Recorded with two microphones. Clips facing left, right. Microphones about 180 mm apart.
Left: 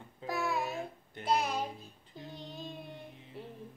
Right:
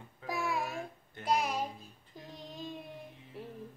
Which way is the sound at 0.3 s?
10° right (ahead or behind).